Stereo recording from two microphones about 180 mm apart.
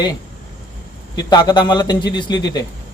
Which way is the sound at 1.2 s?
25° left (ahead or behind).